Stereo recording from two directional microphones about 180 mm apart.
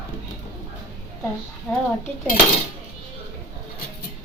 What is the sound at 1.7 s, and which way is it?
Speech, 10° left (ahead or behind).